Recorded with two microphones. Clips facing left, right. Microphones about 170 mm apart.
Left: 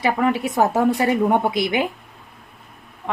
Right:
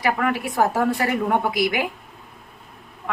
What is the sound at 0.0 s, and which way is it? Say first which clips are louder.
Speech: left 3 dB; 25° left (ahead or behind).